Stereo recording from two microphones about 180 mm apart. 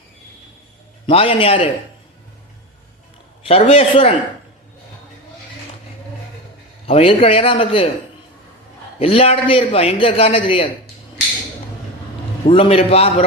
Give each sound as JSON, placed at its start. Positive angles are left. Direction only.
{"t": 1.0, "sound": "a man's voice", "side_deg": 30}
{"t": 3.4, "sound": "a man's voice", "side_deg": 35}
{"t": 6.8, "sound": "a man's voice", "side_deg": 30}
{"t": 9.0, "sound": "a man's voice", "side_deg": 35}
{"t": 12.5, "sound": "a man's voice", "side_deg": 30}